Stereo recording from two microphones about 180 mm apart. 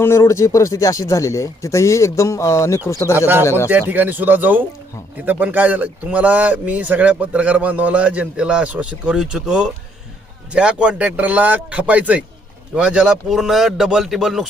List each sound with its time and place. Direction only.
0.0 s speech: 15° left (ahead or behind)
3.2 s a man's voice: 10° right (ahead or behind)